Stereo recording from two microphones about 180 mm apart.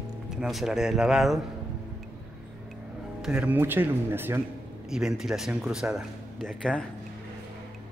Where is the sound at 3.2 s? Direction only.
10° right (ahead or behind).